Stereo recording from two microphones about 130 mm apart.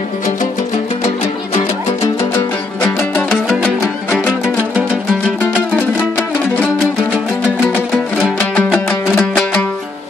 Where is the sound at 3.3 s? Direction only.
5° left (ahead or behind).